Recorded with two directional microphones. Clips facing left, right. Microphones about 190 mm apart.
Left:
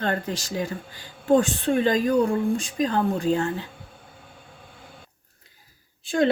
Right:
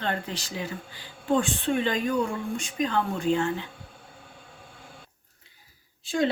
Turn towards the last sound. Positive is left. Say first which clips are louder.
# left 4 dB
turn(degrees=55)  # may be behind; listen again after turning